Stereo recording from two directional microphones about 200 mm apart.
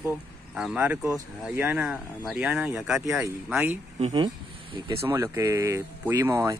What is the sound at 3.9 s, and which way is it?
Speech, 25° right (ahead or behind).